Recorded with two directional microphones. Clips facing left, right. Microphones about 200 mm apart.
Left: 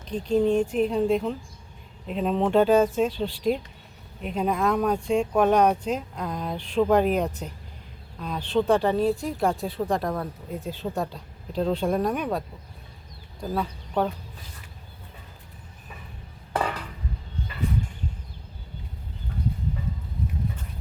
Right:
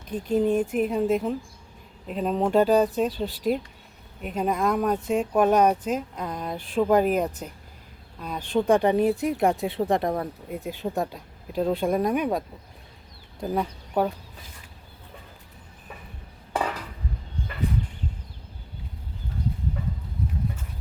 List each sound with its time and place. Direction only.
0.0 s speech: 55° right (ahead or behind)
0.3 s speech: 5° right (ahead or behind); by 10.2 s 20° right (ahead or behind)
10.5 s speech: 10° right (ahead or behind)
13.4 s speech: 15° right (ahead or behind)